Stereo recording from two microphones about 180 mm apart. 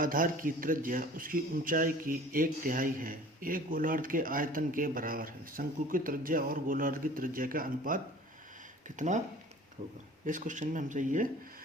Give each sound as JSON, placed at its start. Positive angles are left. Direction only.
{"t": 0.0, "sound": "a man's voice", "side_deg": -50}
{"t": 10.2, "sound": "a man's voice", "side_deg": -45}